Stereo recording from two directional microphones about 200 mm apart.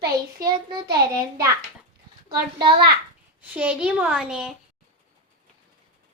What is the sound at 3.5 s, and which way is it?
A woman's voice, 5° right (ahead or behind).